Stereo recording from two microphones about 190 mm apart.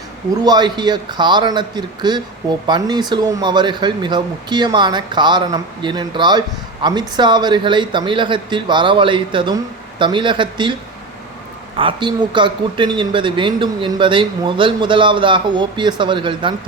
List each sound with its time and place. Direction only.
0.4 s speech: 20° right (ahead or behind)
11.8 s speech: 25° right (ahead or behind)